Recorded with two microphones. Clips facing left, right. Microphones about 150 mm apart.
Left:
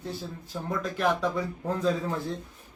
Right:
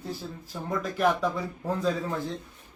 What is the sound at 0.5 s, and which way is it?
A man's voice, centre (ahead or behind).